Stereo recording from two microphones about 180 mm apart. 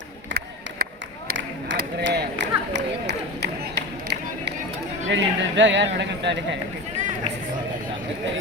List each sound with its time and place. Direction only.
0.3 s a sound: 65° right (ahead or behind)
1.3 s run: 60° right (ahead or behind)
5.0 s speech: 90° right; by 6.6 s 75° right (ahead or behind)